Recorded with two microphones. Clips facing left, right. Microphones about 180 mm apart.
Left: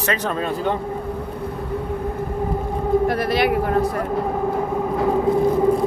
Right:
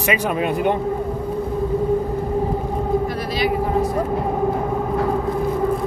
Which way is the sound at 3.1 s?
60° left (ahead or behind).